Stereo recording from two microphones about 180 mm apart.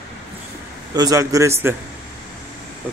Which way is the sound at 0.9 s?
20° right (ahead or behind).